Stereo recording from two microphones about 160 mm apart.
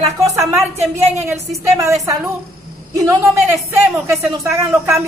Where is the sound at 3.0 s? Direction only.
15° right (ahead or behind).